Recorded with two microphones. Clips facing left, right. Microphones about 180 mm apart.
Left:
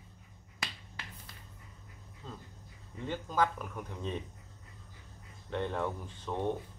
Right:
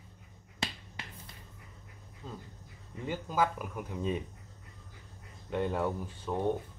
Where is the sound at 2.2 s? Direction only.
10° right (ahead or behind).